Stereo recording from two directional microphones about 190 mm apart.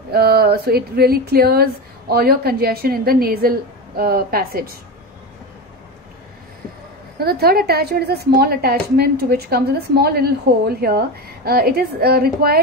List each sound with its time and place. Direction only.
0.1 s speech: 55° right (ahead or behind)
7.2 s speech: 55° right (ahead or behind)